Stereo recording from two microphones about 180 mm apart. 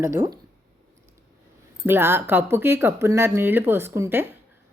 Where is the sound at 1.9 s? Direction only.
10° right (ahead or behind).